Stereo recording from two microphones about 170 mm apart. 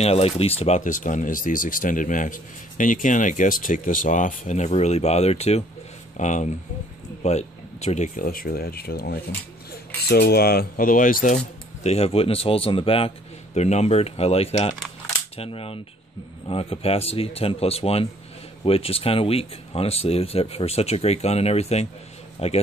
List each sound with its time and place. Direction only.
0.0 s speech: 35° left (ahead or behind)